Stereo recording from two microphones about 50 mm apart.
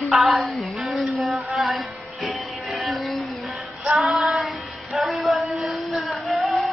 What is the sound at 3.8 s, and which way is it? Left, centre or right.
Female singing, centre.